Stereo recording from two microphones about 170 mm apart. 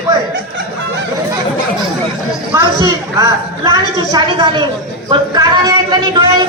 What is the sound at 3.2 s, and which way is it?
Speech, 20° right (ahead or behind).